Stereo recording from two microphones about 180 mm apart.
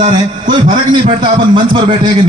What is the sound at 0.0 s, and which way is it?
Speech, 45° right (ahead or behind).